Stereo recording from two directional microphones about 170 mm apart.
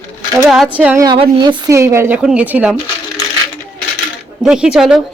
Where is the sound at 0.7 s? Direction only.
5° right (ahead or behind).